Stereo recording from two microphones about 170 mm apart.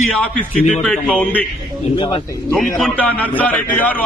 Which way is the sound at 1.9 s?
30° left (ahead or behind).